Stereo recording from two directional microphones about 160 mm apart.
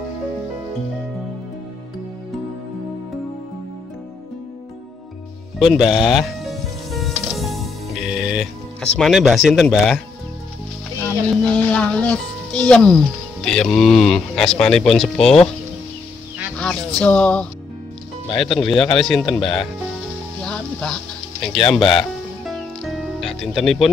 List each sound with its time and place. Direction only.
5.6 s music: centre (ahead or behind)
11.1 s speech: 10° left (ahead or behind)
16.5 s speech: 5° left (ahead or behind)
18.6 s speech: 5° left (ahead or behind)
19.2 s speech: 30° left (ahead or behind)
20.4 s music: 5° left (ahead or behind)
21.5 s speech: 30° left (ahead or behind)
22.5 s music: centre (ahead or behind)